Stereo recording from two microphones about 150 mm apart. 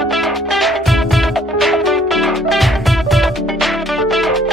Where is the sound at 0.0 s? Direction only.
Centre (ahead or behind).